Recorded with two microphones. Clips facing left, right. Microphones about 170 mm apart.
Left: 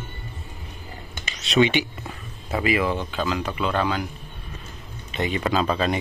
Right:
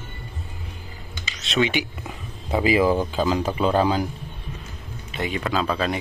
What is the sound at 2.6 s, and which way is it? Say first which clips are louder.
A man's voice: right 4 dB; 30° right (ahead or behind).